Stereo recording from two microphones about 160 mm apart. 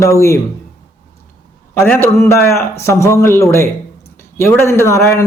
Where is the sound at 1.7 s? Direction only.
15° left (ahead or behind).